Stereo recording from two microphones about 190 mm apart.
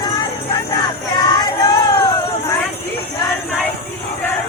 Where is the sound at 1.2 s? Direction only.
20° left (ahead or behind).